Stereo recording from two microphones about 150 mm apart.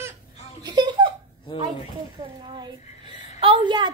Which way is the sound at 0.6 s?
30° right (ahead or behind).